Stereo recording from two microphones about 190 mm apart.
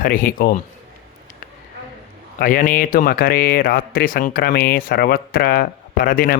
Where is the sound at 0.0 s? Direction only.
45° left (ahead or behind).